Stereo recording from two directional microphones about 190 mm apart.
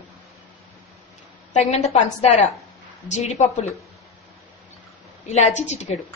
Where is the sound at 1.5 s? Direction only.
35° left (ahead or behind).